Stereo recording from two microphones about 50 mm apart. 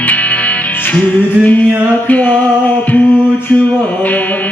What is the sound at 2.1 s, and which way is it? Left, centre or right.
Mantra, left.